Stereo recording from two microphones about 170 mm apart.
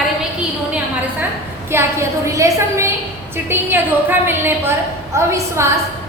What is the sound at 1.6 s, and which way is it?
A woman's voice, 15° right (ahead or behind).